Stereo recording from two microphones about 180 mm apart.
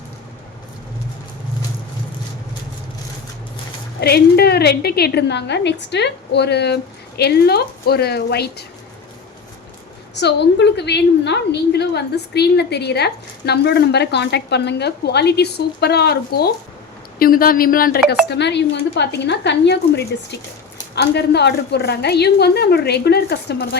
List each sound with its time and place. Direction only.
4.0 s a woman's voice: 60° left (ahead or behind)
10.2 s a woman's voice: 70° left (ahead or behind); by 18.0 s 50° left (ahead or behind)
18.3 s a woman's voice: 70° left (ahead or behind)
20.9 s a woman's voice: 70° left (ahead or behind)